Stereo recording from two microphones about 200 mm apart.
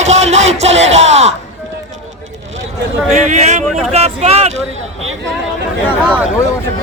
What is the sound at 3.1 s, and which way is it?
Speech, 35° right (ahead or behind).